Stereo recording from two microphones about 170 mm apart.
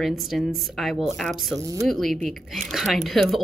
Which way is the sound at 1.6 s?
20° right (ahead or behind).